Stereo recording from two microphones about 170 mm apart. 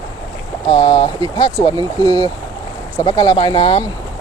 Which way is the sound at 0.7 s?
25° left (ahead or behind).